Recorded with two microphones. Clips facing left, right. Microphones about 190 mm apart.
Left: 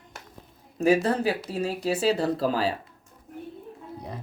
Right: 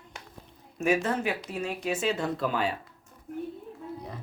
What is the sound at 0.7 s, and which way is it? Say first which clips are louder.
Speech: left 5 dB; 35° left (ahead or behind).